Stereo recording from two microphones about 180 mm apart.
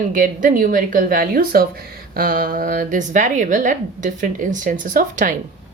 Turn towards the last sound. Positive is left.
turn(degrees=-50)  # may be behind; listen again after turning